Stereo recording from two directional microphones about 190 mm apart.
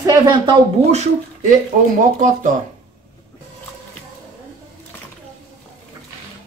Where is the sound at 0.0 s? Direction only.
20° right (ahead or behind).